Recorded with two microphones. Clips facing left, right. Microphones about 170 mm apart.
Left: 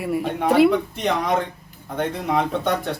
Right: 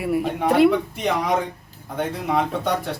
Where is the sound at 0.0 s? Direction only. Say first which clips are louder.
Right 1 dB; centre (ahead or behind).